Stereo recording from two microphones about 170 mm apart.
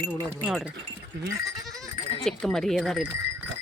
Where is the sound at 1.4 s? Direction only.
Centre (ahead or behind).